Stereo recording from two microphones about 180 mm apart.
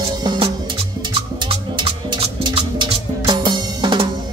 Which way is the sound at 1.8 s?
25° right (ahead or behind).